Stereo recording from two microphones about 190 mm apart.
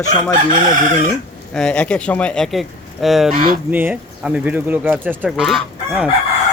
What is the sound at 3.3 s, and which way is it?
Speech, 45° right (ahead or behind).